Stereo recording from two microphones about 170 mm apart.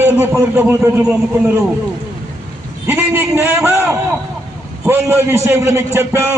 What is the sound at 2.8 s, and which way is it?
A man's voice, 15° right (ahead or behind).